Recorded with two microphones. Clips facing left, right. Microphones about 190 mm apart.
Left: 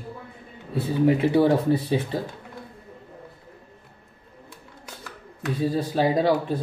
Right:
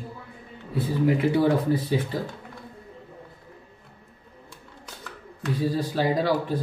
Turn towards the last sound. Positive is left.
turn(degrees=25)  # may be behind; listen again after turning